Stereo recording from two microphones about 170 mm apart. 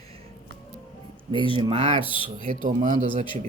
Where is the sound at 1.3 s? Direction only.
30° right (ahead or behind).